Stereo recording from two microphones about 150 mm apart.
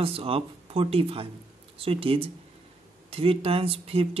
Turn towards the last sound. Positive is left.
turn(degrees=-40)  # may be behind; listen again after turning